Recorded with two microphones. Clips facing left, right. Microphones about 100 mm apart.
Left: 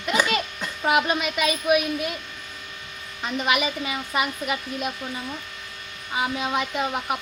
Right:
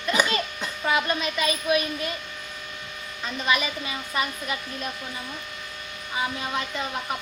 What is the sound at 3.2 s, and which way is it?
A child's voice, 15° left (ahead or behind).